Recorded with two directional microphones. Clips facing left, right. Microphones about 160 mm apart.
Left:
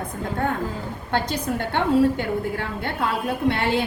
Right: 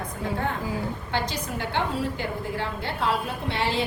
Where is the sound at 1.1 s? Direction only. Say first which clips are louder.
Left 7 dB; 55° left (ahead or behind).